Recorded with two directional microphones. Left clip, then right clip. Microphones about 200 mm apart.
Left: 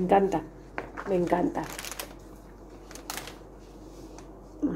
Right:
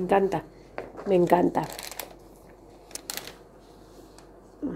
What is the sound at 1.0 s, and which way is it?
Speech, 50° right (ahead or behind).